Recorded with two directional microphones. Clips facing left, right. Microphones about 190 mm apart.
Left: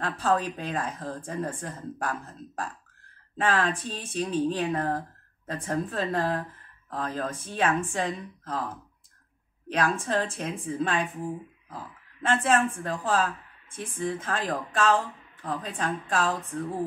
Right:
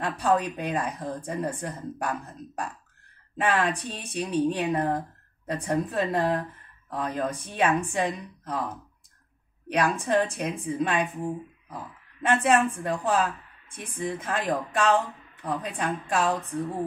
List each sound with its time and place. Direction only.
0.0 s a woman's voice: 15° right (ahead or behind)
9.7 s a woman's voice: 15° right (ahead or behind)